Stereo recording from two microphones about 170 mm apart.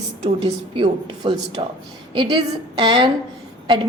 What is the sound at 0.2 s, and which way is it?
A woman's voice, 30° right (ahead or behind).